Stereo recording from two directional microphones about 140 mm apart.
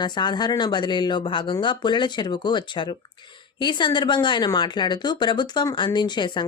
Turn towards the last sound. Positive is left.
turn(degrees=35)  # may be behind; listen again after turning